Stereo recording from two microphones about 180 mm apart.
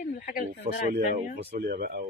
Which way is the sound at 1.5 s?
65° right (ahead or behind).